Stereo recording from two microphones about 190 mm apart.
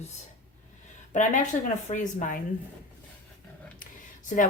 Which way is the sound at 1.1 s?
40° left (ahead or behind).